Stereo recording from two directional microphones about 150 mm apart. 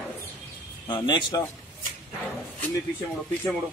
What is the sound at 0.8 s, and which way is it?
Speech, 30° left (ahead or behind).